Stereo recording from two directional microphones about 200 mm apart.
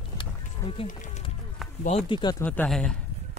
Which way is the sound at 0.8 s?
40° left (ahead or behind).